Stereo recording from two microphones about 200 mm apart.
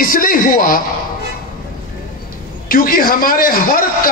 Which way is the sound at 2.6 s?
45° left (ahead or behind).